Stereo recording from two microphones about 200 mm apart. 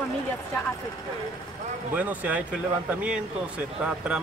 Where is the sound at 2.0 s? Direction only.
5° right (ahead or behind).